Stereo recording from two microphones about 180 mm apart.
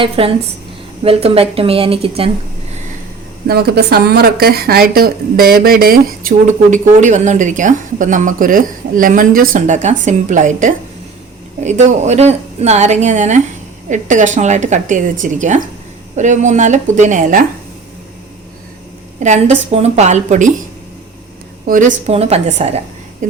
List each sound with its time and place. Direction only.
0.0 s a woman's voice: 30° right (ahead or behind)
3.4 s a woman's voice: 60° right (ahead or behind); by 17.4 s 45° right (ahead or behind)
19.2 s a woman's voice: 40° right (ahead or behind)
21.7 s a woman's voice: 45° right (ahead or behind)